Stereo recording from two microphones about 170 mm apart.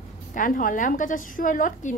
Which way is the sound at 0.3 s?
50° left (ahead or behind).